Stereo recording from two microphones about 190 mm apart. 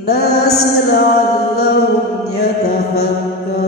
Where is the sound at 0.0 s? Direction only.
60° left (ahead or behind).